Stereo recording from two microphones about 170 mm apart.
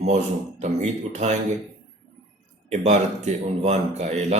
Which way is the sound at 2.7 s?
45° right (ahead or behind).